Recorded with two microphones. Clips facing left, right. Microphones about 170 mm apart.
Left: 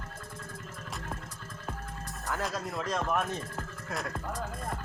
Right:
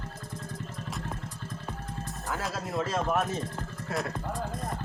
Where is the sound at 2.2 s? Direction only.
Centre (ahead or behind).